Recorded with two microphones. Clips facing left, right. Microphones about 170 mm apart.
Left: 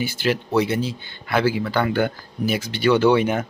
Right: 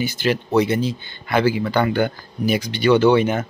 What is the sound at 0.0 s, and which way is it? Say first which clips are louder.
Speech: right 2 dB; 5° left (ahead or behind).